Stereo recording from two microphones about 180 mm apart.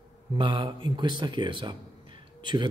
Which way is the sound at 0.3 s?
25° right (ahead or behind).